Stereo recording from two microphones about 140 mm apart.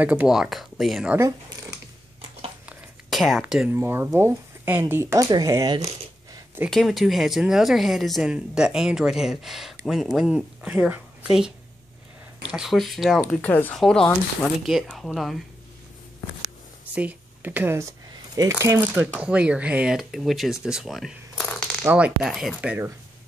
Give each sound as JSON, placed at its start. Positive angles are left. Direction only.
{"t": 0.0, "sound": "speech", "side_deg": -10}
{"t": 2.6, "sound": "a sound", "side_deg": -5}
{"t": 3.7, "sound": "speech", "side_deg": -15}
{"t": 6.7, "sound": "speech", "side_deg": 0}
{"t": 16.9, "sound": "speech", "side_deg": -10}
{"t": 20.6, "sound": "coin", "side_deg": -5}
{"t": 21.8, "sound": "speech", "side_deg": -10}